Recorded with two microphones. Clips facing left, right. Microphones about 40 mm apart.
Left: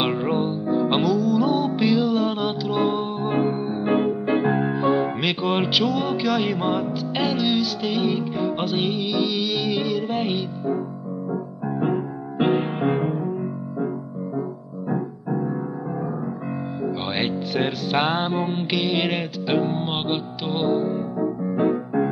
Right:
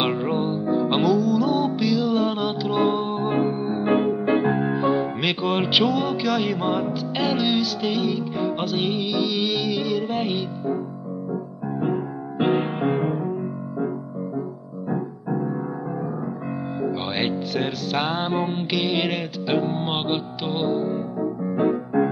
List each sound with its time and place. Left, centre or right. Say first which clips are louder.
0.0 s music: left 1 dB; centre
1.8 s music: left 2 dB; left
2.0 s music: even; centre
3.6 s music: right 1 dB; centre
5.7 s music: right 2 dB; centre
5.9 s music: even; centre
9.7 s music: even; centre
11.8 s music: left 1 dB; centre
13.0 s music: even; centre
14.9 s music: left 1 dB; centre
16.8 s music: even; centre
17.6 s music: left 4 dB; centre
18.5 s music: left 1 dB; centre